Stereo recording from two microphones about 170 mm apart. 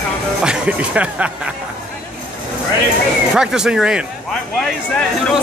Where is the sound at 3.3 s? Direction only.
5° right (ahead or behind).